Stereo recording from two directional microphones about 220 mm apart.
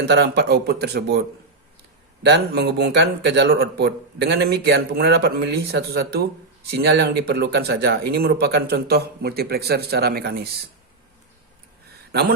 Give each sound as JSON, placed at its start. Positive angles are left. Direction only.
{"t": 0.0, "sound": "speech", "side_deg": -50}
{"t": 2.2, "sound": "speech", "side_deg": -50}